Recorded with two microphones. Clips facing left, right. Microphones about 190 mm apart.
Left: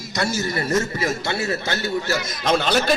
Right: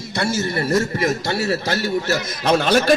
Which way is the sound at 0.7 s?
40° right (ahead or behind).